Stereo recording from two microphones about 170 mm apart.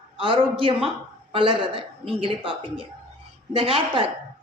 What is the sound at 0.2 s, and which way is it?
A woman's voice, 30° right (ahead or behind).